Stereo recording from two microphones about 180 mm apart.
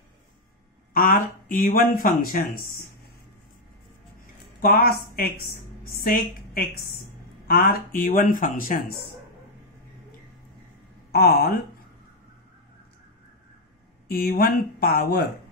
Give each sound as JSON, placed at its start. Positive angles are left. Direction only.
{"t": 0.9, "sound": "speech", "side_deg": 50}
{"t": 4.6, "sound": "a woman's voice", "side_deg": 55}
{"t": 11.1, "sound": "speech", "side_deg": 60}
{"t": 14.0, "sound": "speech", "side_deg": 60}